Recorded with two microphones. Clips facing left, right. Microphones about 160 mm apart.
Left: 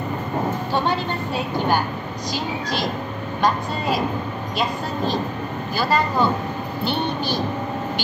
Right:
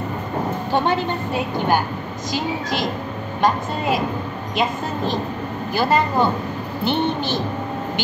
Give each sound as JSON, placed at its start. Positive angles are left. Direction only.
{"t": 4.6, "sound": "a woman's voice", "side_deg": -15}